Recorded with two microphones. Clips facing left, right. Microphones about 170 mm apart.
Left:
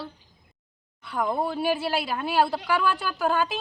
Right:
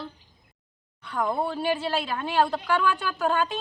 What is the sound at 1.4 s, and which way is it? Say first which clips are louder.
A woman's voice: left 1 dB; 10° left (ahead or behind).